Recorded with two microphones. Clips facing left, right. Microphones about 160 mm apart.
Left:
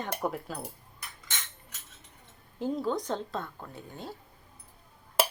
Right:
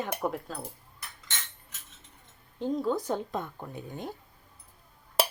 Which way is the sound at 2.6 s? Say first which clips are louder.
Right 1 dB; centre (ahead or behind).